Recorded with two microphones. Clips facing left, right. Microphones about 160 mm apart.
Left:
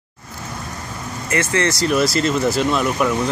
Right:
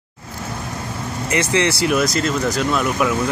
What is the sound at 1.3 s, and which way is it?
Speech, 15° right (ahead or behind).